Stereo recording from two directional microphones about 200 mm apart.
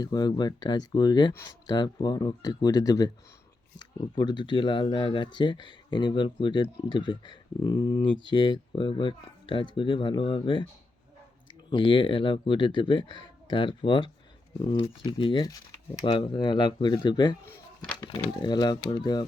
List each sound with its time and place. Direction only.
0.0 s speech: 20° left (ahead or behind)
11.7 s speech: 25° left (ahead or behind)